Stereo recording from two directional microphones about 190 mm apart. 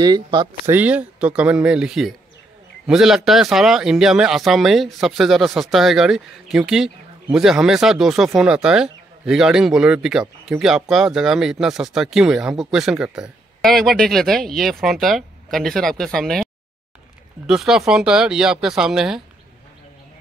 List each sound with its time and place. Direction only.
0.0 s speech: 20° right (ahead or behind)
0.7 s speech: 10° right (ahead or behind)
17.5 s speech: centre (ahead or behind)